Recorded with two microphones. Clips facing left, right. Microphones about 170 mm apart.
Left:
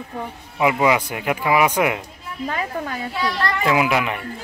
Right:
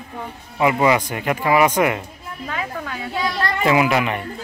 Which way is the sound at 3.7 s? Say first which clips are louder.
Right 2 dB; centre (ahead or behind).